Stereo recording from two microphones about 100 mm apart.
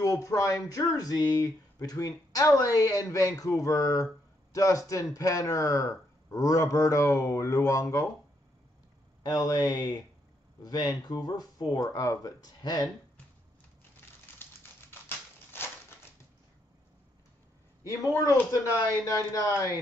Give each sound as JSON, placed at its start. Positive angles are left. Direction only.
{"t": 0.0, "sound": "speech", "side_deg": 35}
{"t": 9.2, "sound": "speech", "side_deg": 40}
{"t": 14.4, "sound": "typewriter", "side_deg": 20}
{"t": 17.8, "sound": "speech", "side_deg": 35}